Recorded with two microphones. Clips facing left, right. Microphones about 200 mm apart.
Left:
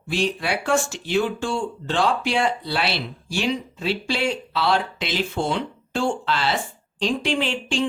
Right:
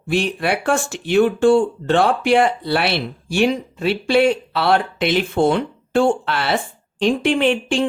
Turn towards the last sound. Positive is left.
turn(degrees=-60)  # may be behind; listen again after turning